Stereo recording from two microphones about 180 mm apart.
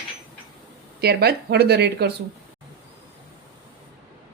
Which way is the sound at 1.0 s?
60° right (ahead or behind).